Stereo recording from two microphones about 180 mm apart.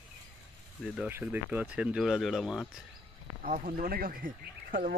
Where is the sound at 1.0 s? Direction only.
10° right (ahead or behind).